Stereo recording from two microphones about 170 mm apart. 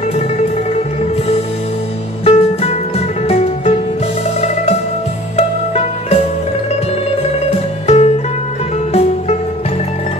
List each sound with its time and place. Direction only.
2.2 s music: 35° left (ahead or behind)
7.8 s music: 40° left (ahead or behind)